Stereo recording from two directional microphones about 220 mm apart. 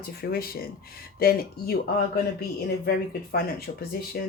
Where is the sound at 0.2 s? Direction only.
45° left (ahead or behind).